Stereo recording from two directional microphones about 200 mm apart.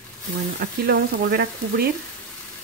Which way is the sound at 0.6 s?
55° right (ahead or behind).